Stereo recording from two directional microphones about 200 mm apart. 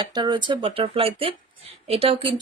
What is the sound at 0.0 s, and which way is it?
Speech, 20° right (ahead or behind).